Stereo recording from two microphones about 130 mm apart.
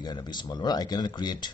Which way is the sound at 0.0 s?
35° left (ahead or behind).